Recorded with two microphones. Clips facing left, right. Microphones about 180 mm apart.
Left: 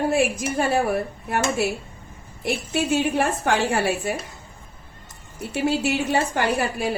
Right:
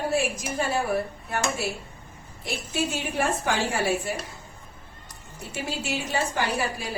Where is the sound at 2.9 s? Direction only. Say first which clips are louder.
Left 9 dB; 60° left (ahead or behind).